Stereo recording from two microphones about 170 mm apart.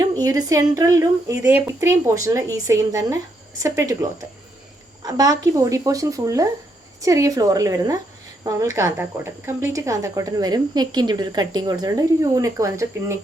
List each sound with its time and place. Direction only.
0.0 s speech: 20° right (ahead or behind)
5.0 s speech: 20° right (ahead or behind)